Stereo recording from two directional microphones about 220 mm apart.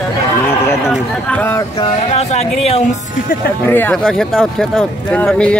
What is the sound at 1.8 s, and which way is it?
Speech, 30° left (ahead or behind).